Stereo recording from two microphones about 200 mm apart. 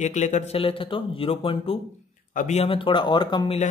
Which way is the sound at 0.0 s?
35° left (ahead or behind).